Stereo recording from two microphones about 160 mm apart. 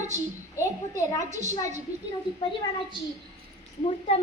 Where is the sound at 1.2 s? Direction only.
50° right (ahead or behind).